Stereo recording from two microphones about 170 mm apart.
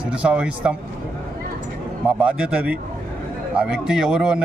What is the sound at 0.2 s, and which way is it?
Speech, 5° right (ahead or behind).